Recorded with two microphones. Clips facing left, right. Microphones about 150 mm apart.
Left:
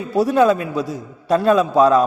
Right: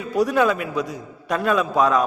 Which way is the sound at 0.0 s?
30° left (ahead or behind).